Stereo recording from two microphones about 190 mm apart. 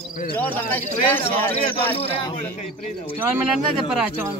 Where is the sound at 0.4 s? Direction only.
10° left (ahead or behind).